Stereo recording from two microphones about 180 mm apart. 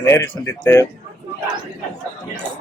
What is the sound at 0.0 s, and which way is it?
Speech, 15° left (ahead or behind).